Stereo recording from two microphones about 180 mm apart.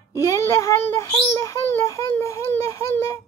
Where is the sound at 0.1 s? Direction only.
15° left (ahead or behind).